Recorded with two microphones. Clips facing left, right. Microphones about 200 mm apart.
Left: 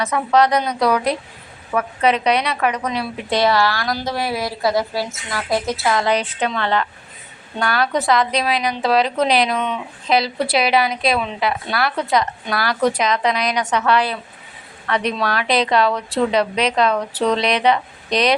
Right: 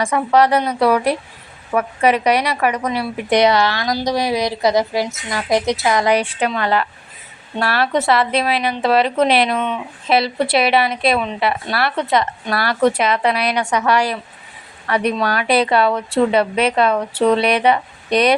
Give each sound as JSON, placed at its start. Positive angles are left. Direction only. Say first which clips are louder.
{"t": 0.0, "sound": "a woman's voice", "louder": "right 2 dB", "side_deg": -10}
{"t": 3.2, "sound": "a woman's voice", "louder": "right 3 dB", "side_deg": -20}